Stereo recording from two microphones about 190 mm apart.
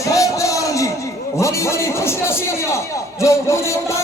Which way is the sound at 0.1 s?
15° left (ahead or behind).